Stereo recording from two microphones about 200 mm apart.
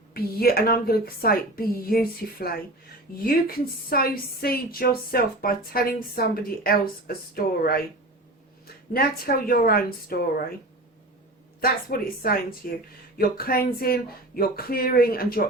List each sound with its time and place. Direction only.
0.1 s a woman's voice: 50° left (ahead or behind)
11.6 s a woman's voice: 50° left (ahead or behind)